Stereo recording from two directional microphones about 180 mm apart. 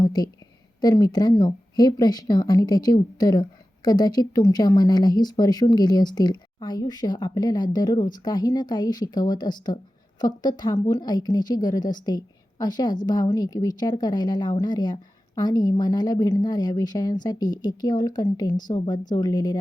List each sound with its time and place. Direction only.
0.0 s a woman's voice: 20° left (ahead or behind)